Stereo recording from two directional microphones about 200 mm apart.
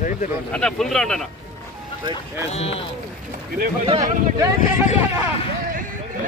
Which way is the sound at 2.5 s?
30° left (ahead or behind).